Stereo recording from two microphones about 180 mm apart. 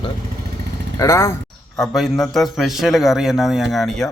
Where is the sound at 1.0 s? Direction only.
15° left (ahead or behind).